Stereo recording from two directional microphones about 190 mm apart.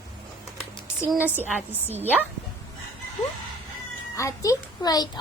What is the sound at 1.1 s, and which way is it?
A woman's voice, 10° right (ahead or behind).